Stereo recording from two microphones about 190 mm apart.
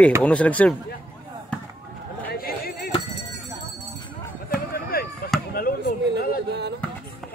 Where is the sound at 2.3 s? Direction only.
55° left (ahead or behind).